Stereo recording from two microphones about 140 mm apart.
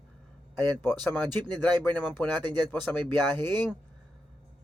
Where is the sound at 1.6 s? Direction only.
10° left (ahead or behind).